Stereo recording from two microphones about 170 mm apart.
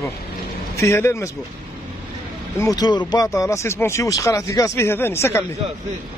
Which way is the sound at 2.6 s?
20° left (ahead or behind).